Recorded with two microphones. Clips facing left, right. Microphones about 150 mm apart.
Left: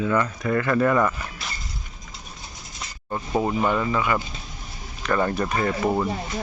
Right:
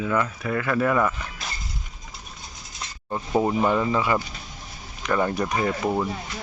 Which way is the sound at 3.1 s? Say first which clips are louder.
Right 1 dB; 5° right (ahead or behind).